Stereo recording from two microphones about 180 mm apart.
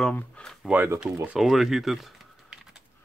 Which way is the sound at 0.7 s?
10° right (ahead or behind).